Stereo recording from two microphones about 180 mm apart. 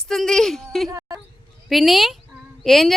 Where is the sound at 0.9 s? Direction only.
20° right (ahead or behind).